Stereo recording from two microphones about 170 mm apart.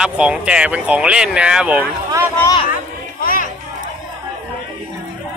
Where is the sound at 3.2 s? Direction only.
55° left (ahead or behind).